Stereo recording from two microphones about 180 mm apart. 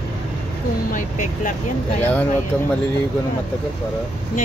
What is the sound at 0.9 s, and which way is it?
Speech, 45° left (ahead or behind).